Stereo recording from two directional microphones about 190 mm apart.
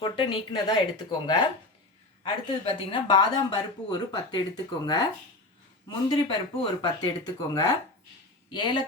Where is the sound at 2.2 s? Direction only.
25° left (ahead or behind).